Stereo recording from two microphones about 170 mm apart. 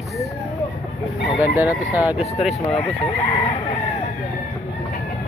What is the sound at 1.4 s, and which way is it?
Speech, 10° right (ahead or behind).